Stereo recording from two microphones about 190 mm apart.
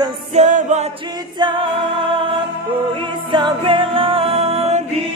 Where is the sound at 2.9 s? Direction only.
25° right (ahead or behind).